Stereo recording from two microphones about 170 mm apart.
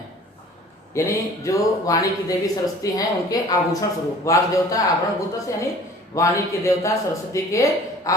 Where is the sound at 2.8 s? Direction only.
20° left (ahead or behind).